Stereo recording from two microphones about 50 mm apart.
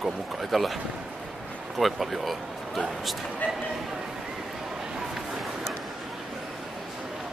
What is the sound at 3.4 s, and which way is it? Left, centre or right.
Speech, left.